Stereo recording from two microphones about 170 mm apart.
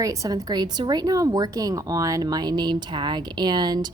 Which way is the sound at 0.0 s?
20° right (ahead or behind).